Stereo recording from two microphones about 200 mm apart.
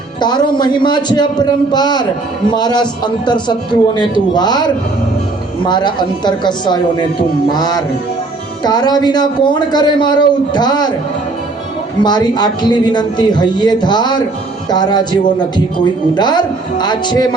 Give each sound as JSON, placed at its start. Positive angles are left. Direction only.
{"t": 0.2, "sound": "speech", "side_deg": 20}
{"t": 12.0, "sound": "speech", "side_deg": 20}